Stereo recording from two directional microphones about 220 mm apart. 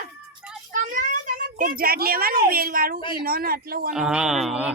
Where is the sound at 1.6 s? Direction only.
40° right (ahead or behind).